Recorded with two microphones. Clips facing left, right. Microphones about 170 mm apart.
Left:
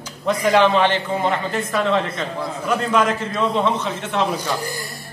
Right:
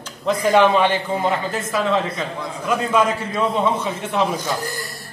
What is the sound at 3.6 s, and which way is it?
Speech, 10° right (ahead or behind).